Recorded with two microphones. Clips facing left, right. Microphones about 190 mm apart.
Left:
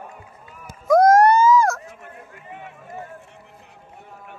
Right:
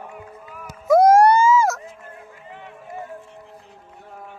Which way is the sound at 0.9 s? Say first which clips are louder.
Right 1 dB; 10° right (ahead or behind).